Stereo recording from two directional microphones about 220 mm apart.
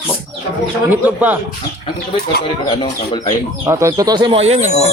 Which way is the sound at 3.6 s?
10° right (ahead or behind).